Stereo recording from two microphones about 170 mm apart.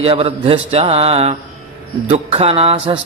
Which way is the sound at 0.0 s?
35° right (ahead or behind).